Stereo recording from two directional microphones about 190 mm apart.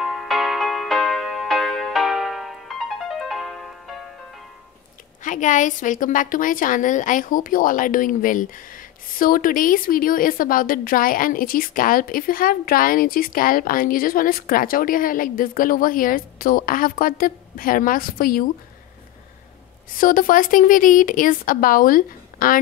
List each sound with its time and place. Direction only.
0.0 s music: centre (ahead or behind)
5.2 s a woman's voice: 40° left (ahead or behind)
20.0 s a woman's voice: 45° left (ahead or behind)